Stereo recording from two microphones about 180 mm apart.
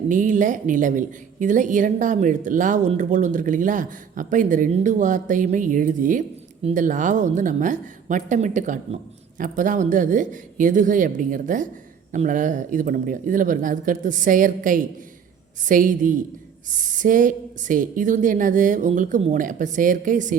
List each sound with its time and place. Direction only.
0.1 s a woman's voice: 45° right (ahead or behind)